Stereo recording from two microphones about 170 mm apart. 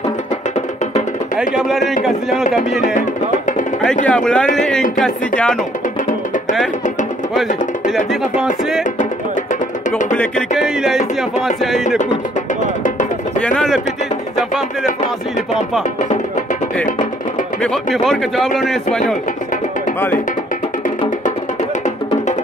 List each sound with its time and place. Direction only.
1.3 s speech: 5° right (ahead or behind)
2.8 s speech: 50° left (ahead or behind)
4.0 s speech: 5° left (ahead or behind)
8.1 s speech: centre (ahead or behind)
9.5 s music: 45° left (ahead or behind)
10.6 s speech: 5° right (ahead or behind)
17.6 s speech: centre (ahead or behind)